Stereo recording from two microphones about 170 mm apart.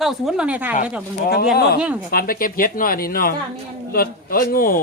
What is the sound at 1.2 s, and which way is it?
Speech, 65° left (ahead or behind).